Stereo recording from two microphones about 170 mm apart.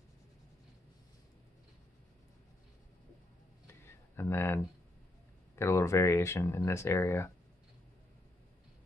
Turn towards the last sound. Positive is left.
turn(degrees=15)  # may be behind; listen again after turning